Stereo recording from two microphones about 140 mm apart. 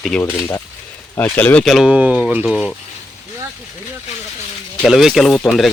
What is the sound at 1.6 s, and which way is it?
Speech, 5° right (ahead or behind).